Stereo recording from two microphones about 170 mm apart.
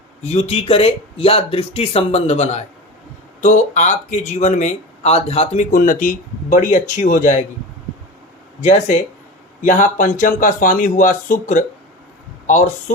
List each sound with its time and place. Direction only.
0.2 s speech: 40° left (ahead or behind)
5.7 s speech: 55° left (ahead or behind)
9.6 s speech: 50° left (ahead or behind)